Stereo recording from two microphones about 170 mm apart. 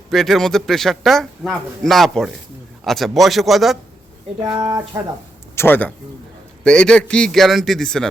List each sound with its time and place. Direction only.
0.1 s a man's voice: centre (ahead or behind)
4.4 s speech: 25° right (ahead or behind)
5.5 s a man's voice: 10° left (ahead or behind)